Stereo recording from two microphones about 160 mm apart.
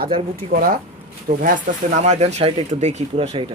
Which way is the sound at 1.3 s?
50° right (ahead or behind).